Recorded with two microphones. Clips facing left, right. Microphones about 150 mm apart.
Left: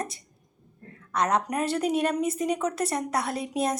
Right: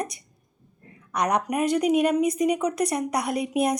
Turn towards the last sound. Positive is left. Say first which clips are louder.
# right 4 dB
turn(degrees=-15)  # may be behind; listen again after turning